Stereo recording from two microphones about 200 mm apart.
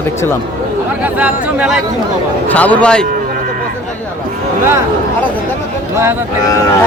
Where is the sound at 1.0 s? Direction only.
5° right (ahead or behind).